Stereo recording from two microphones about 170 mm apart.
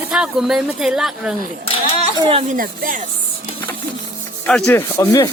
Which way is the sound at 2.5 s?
50° right (ahead or behind).